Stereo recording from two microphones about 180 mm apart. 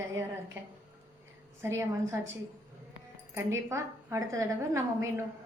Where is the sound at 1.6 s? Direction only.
15° right (ahead or behind).